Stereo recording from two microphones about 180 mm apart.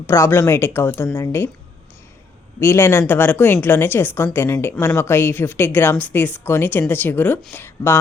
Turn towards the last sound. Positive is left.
turn(degrees=15)  # may be behind; listen again after turning